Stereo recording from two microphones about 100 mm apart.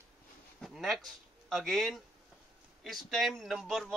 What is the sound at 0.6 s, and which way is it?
Speech, centre (ahead or behind).